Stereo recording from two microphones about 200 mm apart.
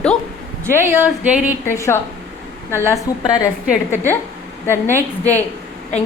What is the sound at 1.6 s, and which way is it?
A woman's voice, 15° left (ahead or behind).